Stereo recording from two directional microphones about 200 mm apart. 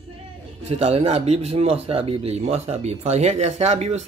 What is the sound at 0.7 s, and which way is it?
Speech, 30° right (ahead or behind).